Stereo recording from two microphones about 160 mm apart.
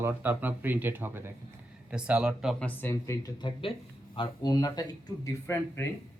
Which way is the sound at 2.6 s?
15° left (ahead or behind).